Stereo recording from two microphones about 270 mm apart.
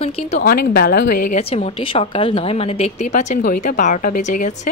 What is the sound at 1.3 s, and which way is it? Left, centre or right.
A woman's voice, left.